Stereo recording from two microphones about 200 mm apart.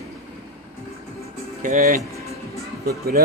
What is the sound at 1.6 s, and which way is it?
A man's voice, 40° right (ahead or behind).